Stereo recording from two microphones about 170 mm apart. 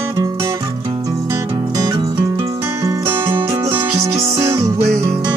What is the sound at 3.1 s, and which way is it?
Music, 30° right (ahead or behind).